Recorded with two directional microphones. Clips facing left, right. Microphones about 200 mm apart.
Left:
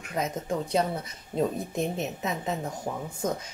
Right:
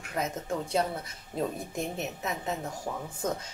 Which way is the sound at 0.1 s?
20° left (ahead or behind).